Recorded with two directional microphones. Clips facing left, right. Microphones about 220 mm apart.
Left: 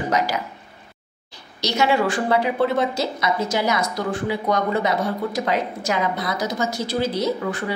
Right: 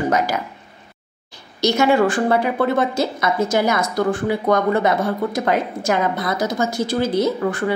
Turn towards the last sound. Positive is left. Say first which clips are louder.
# right 4 dB
turn(degrees=-50)  # may be behind; listen again after turning